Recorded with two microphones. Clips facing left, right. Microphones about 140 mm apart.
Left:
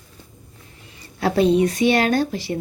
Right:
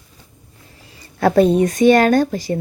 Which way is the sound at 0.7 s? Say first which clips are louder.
Right 1 dB; 35° right (ahead or behind).